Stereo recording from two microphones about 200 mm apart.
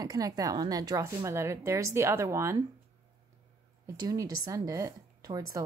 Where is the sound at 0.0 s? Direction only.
20° right (ahead or behind).